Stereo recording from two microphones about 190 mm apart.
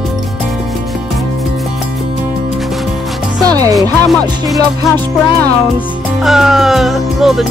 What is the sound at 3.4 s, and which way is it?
Speech, 20° right (ahead or behind).